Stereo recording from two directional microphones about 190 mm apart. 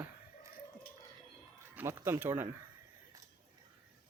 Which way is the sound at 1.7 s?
10° right (ahead or behind).